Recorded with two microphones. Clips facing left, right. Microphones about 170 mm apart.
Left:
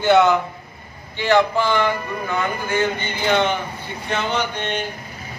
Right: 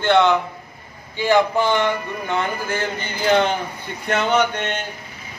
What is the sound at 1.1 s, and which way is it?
Speech, 15° right (ahead or behind).